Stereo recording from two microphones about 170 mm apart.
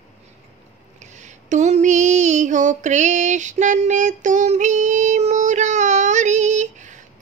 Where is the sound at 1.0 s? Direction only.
45° right (ahead or behind).